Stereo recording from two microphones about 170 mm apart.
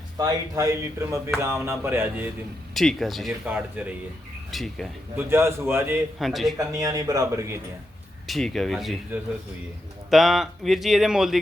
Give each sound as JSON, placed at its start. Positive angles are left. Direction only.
{"t": 0.2, "sound": "a man's voice", "side_deg": -20}
{"t": 2.7, "sound": "speech", "side_deg": 0}
{"t": 3.4, "sound": "a man's voice", "side_deg": -10}
{"t": 4.5, "sound": "speech", "side_deg": 0}
{"t": 5.1, "sound": "a man's voice", "side_deg": -15}
{"t": 6.1, "sound": "speech", "side_deg": 0}
{"t": 6.6, "sound": "a man's voice", "side_deg": -20}
{"t": 8.3, "sound": "speech", "side_deg": 0}
{"t": 10.1, "sound": "speech", "side_deg": 0}